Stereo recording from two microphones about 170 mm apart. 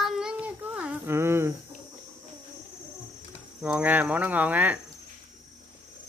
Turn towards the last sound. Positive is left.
turn(degrees=-10)  # may be behind; listen again after turning